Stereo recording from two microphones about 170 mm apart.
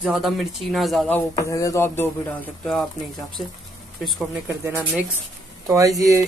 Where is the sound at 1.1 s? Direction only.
15° left (ahead or behind); by 4.5 s centre (ahead or behind).